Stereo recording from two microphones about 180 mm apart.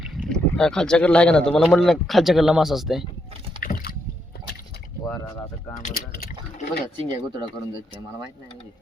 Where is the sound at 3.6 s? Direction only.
50° left (ahead or behind).